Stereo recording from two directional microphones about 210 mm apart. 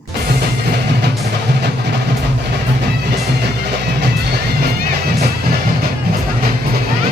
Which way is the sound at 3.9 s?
50° right (ahead or behind).